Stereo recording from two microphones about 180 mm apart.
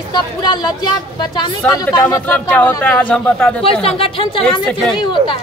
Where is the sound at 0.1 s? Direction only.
25° left (ahead or behind).